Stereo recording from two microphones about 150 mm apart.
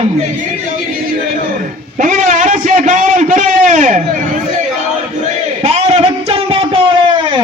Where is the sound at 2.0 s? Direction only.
55° right (ahead or behind).